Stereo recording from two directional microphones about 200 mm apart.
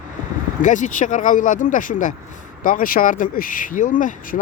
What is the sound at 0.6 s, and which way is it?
Speech, 40° left (ahead or behind).